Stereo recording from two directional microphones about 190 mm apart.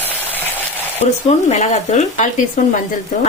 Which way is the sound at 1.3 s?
35° left (ahead or behind).